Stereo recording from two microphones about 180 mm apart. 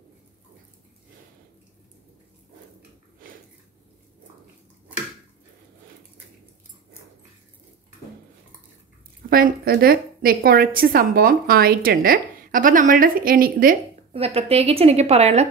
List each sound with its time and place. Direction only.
9.3 s a woman's voice: 55° right (ahead or behind)
14.1 s a woman's voice: 35° right (ahead or behind)